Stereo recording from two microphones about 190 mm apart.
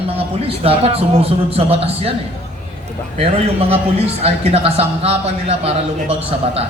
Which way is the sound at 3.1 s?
30° right (ahead or behind).